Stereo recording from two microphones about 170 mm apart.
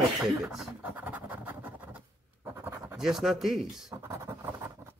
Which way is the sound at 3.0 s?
Centre (ahead or behind).